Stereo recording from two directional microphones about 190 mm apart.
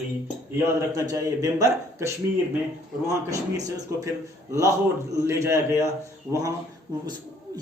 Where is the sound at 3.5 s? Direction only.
20° right (ahead or behind).